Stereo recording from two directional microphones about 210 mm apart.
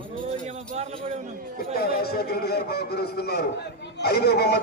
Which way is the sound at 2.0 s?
50° left (ahead or behind).